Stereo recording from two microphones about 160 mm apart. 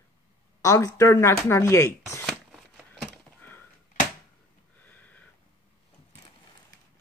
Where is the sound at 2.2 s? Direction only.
Centre (ahead or behind).